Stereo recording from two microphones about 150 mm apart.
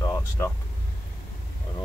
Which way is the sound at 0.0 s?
20° left (ahead or behind).